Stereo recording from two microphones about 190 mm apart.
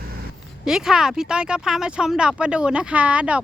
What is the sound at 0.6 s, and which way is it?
Speech, centre (ahead or behind).